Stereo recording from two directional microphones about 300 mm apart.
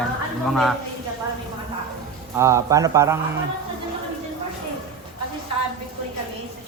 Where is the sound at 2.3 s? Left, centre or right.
Centre.